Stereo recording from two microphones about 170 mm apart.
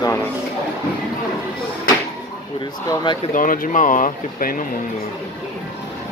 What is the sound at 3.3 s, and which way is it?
Speech, 55° left (ahead or behind).